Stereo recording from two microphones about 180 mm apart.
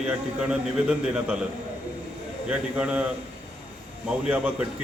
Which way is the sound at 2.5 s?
5° right (ahead or behind).